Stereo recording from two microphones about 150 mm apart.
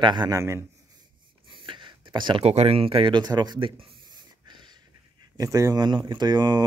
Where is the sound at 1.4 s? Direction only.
30° right (ahead or behind).